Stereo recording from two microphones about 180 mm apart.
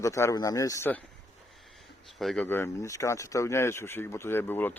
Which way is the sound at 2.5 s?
15° left (ahead or behind).